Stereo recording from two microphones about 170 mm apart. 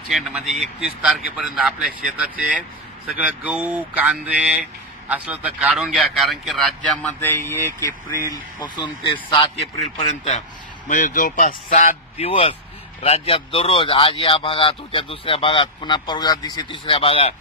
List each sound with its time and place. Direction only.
0.1 s a man's voice: 5° right (ahead or behind); by 9.7 s 30° left (ahead or behind)
10.9 s speech: 50° left (ahead or behind); by 17.3 s 30° left (ahead or behind)